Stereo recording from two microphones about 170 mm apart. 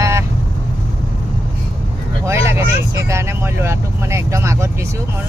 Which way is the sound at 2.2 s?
15° right (ahead or behind).